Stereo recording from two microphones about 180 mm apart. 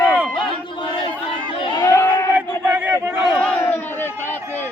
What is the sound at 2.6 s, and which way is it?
Battle cry, 10° right (ahead or behind).